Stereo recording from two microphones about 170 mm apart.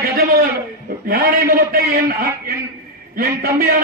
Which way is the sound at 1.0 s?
60° right (ahead or behind).